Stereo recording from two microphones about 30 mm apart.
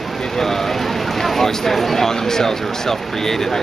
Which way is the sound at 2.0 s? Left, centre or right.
Centre.